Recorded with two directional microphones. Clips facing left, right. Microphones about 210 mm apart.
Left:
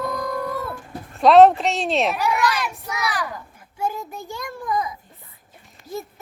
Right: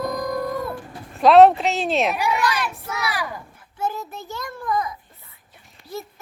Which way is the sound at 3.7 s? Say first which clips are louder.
Even; 10° left (ahead or behind).